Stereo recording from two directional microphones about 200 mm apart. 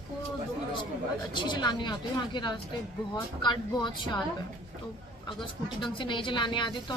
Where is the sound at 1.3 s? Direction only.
20° left (ahead or behind).